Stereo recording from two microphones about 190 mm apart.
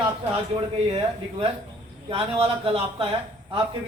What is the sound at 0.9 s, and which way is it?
A man's voice, 30° right (ahead or behind).